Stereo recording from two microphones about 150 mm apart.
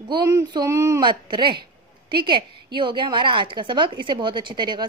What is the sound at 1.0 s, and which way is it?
A woman's voice, 30° right (ahead or behind).